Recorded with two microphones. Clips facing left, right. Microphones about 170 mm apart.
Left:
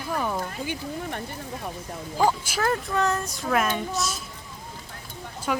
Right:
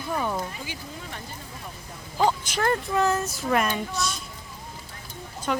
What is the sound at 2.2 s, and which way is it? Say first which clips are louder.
Speech: even; 5° left (ahead or behind).